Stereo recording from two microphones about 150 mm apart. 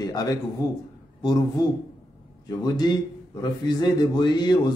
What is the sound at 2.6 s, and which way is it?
A man's voice, 25° left (ahead or behind).